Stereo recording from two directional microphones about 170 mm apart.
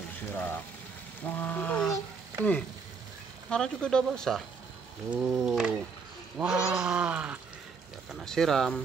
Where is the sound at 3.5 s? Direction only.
5° left (ahead or behind).